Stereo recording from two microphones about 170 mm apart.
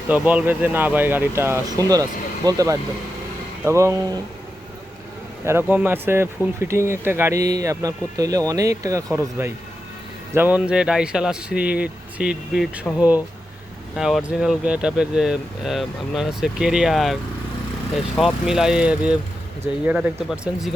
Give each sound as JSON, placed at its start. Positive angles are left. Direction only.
{"t": 0.1, "sound": "speech", "side_deg": -10}
{"t": 5.5, "sound": "speech", "side_deg": -10}